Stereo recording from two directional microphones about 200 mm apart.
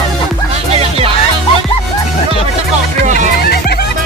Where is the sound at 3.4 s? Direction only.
50° left (ahead or behind).